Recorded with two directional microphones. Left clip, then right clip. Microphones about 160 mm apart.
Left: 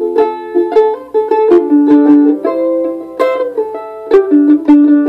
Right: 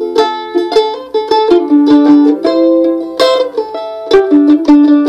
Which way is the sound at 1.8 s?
Centre (ahead or behind).